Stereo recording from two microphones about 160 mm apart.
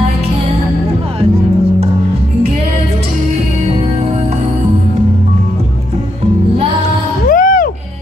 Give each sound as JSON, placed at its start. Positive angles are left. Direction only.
{"t": 7.2, "sound": "music", "side_deg": 60}